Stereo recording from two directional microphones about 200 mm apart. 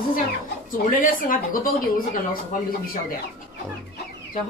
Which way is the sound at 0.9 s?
45° left (ahead or behind).